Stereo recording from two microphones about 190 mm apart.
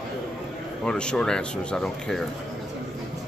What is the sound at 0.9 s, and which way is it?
A man's voice, 5° left (ahead or behind).